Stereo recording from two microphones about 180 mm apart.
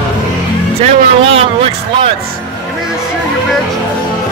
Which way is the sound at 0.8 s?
35° right (ahead or behind).